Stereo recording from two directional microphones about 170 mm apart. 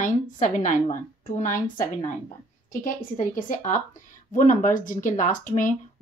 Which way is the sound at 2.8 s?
50° left (ahead or behind).